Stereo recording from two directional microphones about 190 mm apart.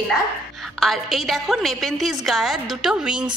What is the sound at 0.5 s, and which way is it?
A woman's voice, centre (ahead or behind).